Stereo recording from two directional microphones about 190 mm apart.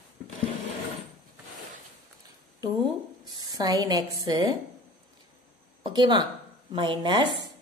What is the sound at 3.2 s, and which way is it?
Speech, 20° right (ahead or behind).